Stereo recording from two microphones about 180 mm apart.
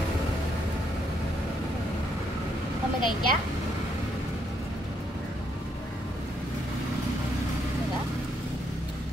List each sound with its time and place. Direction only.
3.0 s a woman's voice: 25° left (ahead or behind)